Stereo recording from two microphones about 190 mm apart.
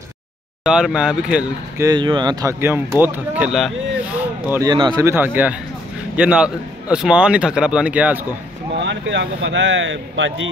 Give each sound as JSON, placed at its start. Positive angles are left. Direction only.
{"t": 0.7, "sound": "a man's voice", "side_deg": -5}
{"t": 1.8, "sound": "a man's voice", "side_deg": -20}
{"t": 4.5, "sound": "a man's voice", "side_deg": -15}
{"t": 8.7, "sound": "speech", "side_deg": -70}